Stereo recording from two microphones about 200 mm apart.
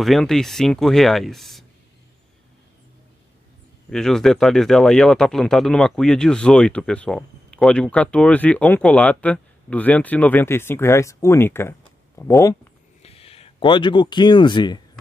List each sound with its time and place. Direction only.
0.0 s speech: centre (ahead or behind)
3.9 s speech: 5° left (ahead or behind)
13.0 s speech: 30° left (ahead or behind)